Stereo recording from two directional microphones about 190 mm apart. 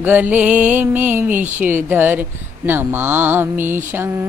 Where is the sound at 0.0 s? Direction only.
10° right (ahead or behind).